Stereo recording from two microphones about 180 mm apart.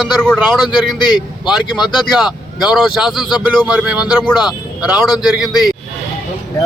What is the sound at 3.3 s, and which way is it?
Speech, 25° left (ahead or behind).